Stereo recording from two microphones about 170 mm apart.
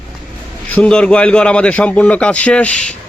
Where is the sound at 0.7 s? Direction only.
5° left (ahead or behind).